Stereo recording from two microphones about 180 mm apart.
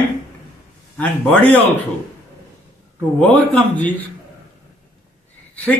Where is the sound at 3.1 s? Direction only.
5° left (ahead or behind).